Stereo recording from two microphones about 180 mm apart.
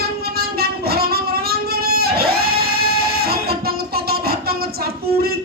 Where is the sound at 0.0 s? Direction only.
60° right (ahead or behind).